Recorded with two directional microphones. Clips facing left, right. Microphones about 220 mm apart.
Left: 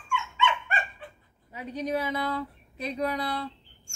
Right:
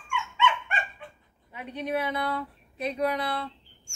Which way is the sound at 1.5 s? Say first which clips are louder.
Left 2 dB; 40° left (ahead or behind).